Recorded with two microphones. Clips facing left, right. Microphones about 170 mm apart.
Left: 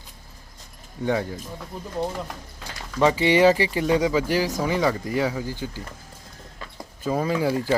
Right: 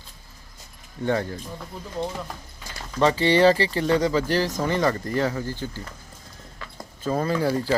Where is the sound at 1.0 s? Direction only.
10° left (ahead or behind).